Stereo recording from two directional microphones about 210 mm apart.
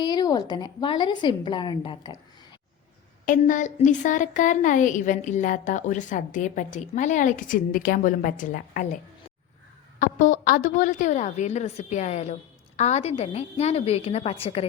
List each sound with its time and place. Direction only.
0.0 s a woman's voice: 20° left (ahead or behind)
3.2 s a woman's voice: 40° left (ahead or behind)
10.0 s a woman's voice: 40° left (ahead or behind)